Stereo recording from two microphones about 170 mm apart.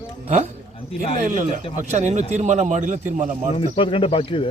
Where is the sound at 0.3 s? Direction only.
40° right (ahead or behind).